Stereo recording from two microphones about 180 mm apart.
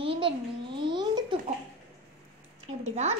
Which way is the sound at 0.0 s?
30° right (ahead or behind).